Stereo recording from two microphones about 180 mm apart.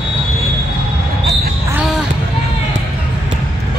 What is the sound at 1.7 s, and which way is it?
Basketball bounce, 5° right (ahead or behind).